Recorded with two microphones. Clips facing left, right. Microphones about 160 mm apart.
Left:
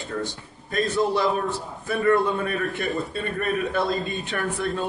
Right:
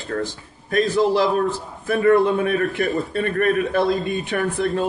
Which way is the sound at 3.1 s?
65° right (ahead or behind).